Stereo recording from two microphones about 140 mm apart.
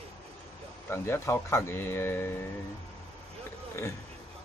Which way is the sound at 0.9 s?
20° left (ahead or behind).